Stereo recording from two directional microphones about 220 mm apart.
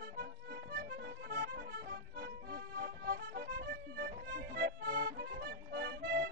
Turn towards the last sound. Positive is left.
turn(degrees=-50)  # may be behind; listen again after turning